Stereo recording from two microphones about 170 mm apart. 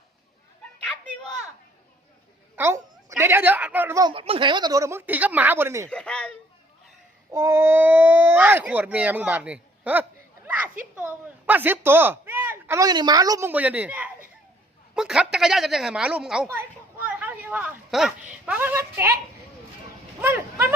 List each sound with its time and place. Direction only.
2.6 s speech: 15° right (ahead or behind)
4.1 s speech: 30° right (ahead or behind); by 5.9 s 15° right (ahead or behind)
5.9 s a woman's voice: 5° left (ahead or behind)
7.3 s speech: 15° right (ahead or behind)
13.5 s a woman's voice: 10° right (ahead or behind)
16.5 s a sound: 15° right (ahead or behind)
18.4 s speech: 10° right (ahead or behind)
20.2 s vehicle: 10° right (ahead or behind)